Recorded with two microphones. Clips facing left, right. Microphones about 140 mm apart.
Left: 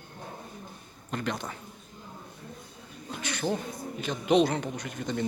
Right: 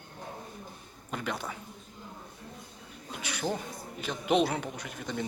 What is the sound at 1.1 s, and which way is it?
Speech, 5° right (ahead or behind).